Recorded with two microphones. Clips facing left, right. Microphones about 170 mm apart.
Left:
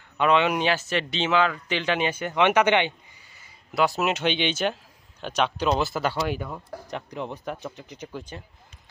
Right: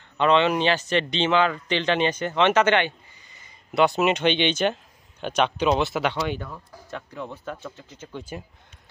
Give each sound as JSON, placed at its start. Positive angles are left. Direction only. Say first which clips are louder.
{"t": 0.2, "sound": "speech", "louder": "right 2 dB", "side_deg": 10}
{"t": 6.9, "sound": "speech", "louder": "left 1 dB", "side_deg": 20}
{"t": 8.1, "sound": "speech", "louder": "right 4 dB", "side_deg": -5}